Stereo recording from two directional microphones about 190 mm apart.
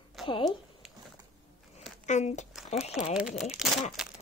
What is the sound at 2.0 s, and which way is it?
Speech, 40° left (ahead or behind).